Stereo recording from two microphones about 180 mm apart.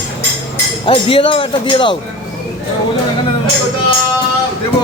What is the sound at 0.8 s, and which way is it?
Speech, 30° left (ahead or behind).